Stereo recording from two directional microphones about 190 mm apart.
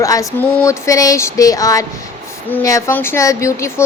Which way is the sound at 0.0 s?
15° left (ahead or behind).